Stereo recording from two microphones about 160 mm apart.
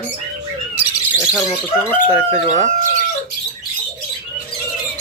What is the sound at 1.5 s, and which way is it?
Speech, 15° left (ahead or behind).